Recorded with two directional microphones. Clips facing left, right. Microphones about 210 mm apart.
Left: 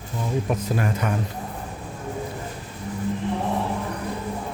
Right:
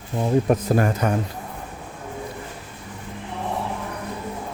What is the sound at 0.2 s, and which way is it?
Speech, 45° right (ahead or behind).